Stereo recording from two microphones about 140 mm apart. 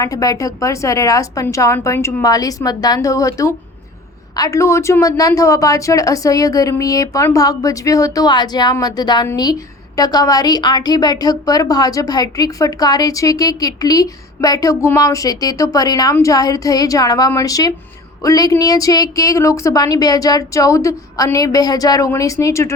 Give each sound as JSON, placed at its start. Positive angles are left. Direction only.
{"t": 0.0, "sound": "a woman's voice", "side_deg": 25}